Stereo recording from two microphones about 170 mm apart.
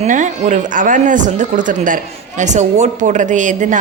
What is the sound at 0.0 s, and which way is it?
Speech, 45° right (ahead or behind).